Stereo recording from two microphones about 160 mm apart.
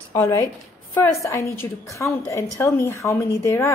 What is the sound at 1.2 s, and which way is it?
A woman's voice, 20° left (ahead or behind).